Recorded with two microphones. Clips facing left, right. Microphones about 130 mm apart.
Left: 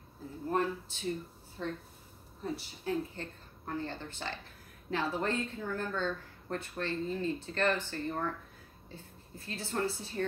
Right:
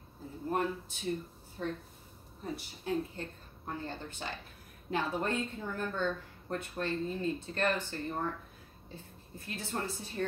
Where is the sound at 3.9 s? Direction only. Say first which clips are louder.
Even; 15° right (ahead or behind).